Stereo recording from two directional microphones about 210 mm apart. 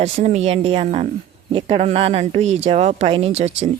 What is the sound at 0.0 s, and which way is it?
Speech, 30° right (ahead or behind).